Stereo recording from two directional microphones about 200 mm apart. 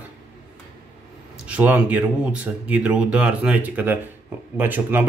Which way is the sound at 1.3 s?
5° right (ahead or behind).